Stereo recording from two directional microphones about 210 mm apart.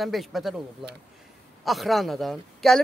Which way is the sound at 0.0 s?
Centre (ahead or behind).